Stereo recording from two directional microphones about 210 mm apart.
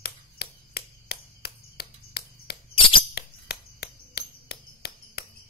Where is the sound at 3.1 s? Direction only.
50° left (ahead or behind).